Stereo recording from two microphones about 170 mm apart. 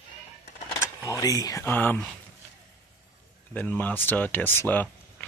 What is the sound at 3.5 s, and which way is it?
Speech, 10° left (ahead or behind).